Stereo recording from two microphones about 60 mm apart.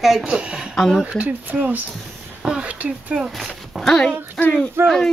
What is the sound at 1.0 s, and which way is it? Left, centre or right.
Speech, right.